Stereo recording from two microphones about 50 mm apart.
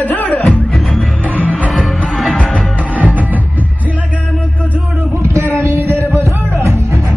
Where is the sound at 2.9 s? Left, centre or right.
Right.